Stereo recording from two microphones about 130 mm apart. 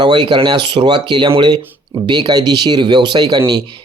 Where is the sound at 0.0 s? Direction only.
35° right (ahead or behind).